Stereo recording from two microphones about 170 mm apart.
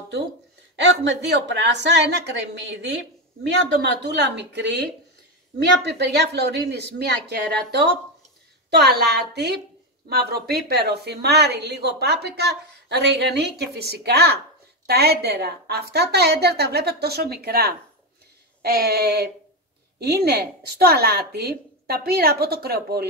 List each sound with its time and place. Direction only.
0.7 s a woman's voice: 90° right
5.6 s a woman's voice: 75° right (ahead or behind)